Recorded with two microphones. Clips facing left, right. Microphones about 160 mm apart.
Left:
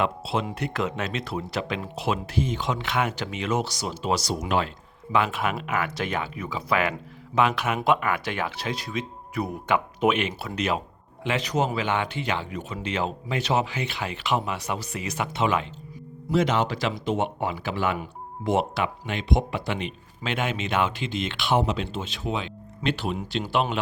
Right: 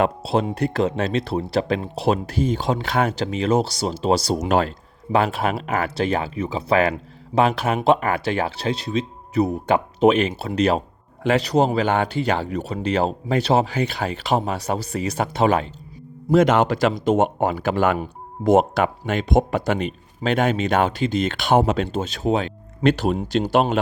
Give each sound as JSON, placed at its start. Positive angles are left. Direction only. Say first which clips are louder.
{"t": 0.0, "sound": "speech", "louder": "right 6 dB", "side_deg": -40}
{"t": 16.3, "sound": "speech", "louder": "right 7 dB", "side_deg": -50}
{"t": 17.9, "sound": "speech", "louder": "right 6 dB", "side_deg": -35}